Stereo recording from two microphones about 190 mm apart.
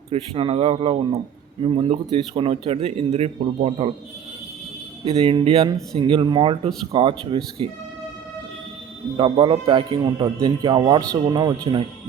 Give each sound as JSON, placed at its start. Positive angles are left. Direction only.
{"t": 0.1, "sound": "speech", "side_deg": -30}
{"t": 5.0, "sound": "speech", "side_deg": -30}
{"t": 9.1, "sound": "speech", "side_deg": -25}